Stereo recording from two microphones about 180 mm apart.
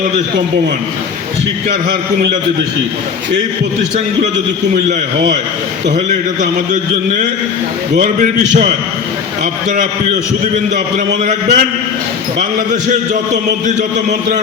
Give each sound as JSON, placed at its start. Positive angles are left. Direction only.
{"t": 4.9, "sound": "a man's voice", "side_deg": -40}
{"t": 7.9, "sound": "a man's voice", "side_deg": -50}
{"t": 10.9, "sound": "a man's voice", "side_deg": -45}
{"t": 13.7, "sound": "a man's voice", "side_deg": -40}